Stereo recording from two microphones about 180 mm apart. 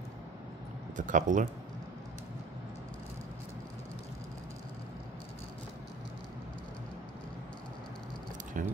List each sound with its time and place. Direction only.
0.9 s speech: 45° right (ahead or behind)
8.6 s speech: 50° right (ahead or behind)